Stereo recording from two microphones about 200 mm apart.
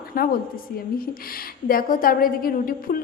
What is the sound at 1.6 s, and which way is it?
A woman's voice, 45° left (ahead or behind).